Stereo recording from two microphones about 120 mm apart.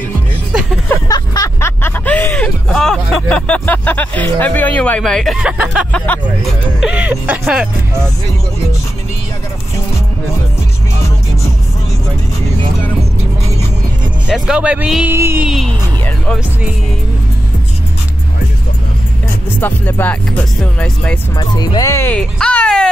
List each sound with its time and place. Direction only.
0.5 s music: 5° right (ahead or behind)
1.0 s a sound: 30° left (ahead or behind)
1.6 s speech: 20° left (ahead or behind); by 5.4 s 5° left (ahead or behind)
5.4 s speech: 10° right (ahead or behind)
5.9 s speech: 10° left (ahead or behind)
6.8 s speech: 10° right (ahead or behind)
14.3 s speech: 5° right (ahead or behind)
15.0 s a sound: 20° right (ahead or behind)
15.4 s speech: 5° right (ahead or behind)
19.6 s speech: 15° left (ahead or behind)
21.4 s speech: 35° left (ahead or behind)
21.9 s speech: 15° left (ahead or behind)
22.4 s music: 10° left (ahead or behind)